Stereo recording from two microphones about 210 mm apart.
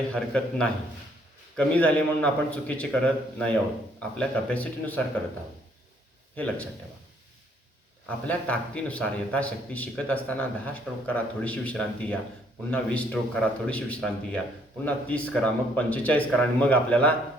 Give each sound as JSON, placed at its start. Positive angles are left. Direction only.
{"t": 0.1, "sound": "a man's voice", "side_deg": 5}
{"t": 6.3, "sound": "a man's voice", "side_deg": 5}
{"t": 8.0, "sound": "a man's voice", "side_deg": 5}